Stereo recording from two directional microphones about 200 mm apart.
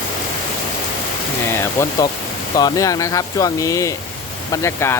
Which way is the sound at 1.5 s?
15° left (ahead or behind).